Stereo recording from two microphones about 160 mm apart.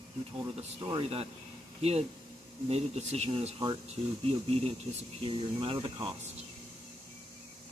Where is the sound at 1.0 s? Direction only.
40° right (ahead or behind).